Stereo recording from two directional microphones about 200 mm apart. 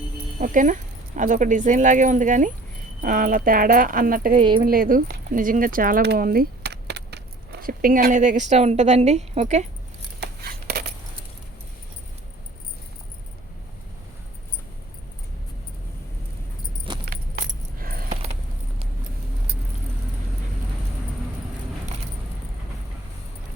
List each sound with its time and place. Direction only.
0.3 s speech: 40° right (ahead or behind)
7.6 s speech: 45° right (ahead or behind)
10.2 s a sound: 50° right (ahead or behind)
17.1 s keys jangling: 45° right (ahead or behind)